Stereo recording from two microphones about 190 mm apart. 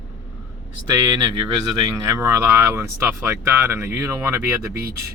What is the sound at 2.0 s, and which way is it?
Speech, 15° right (ahead or behind).